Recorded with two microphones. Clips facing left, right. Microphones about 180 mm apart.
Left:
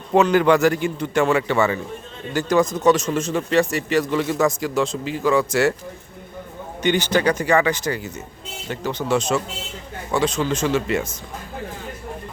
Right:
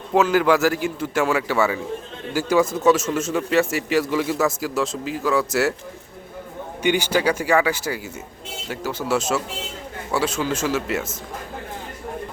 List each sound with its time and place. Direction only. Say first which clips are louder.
0.1 s speech: left 2 dB; 5° right (ahead or behind)
6.8 s speech: left 1 dB; 10° right (ahead or behind)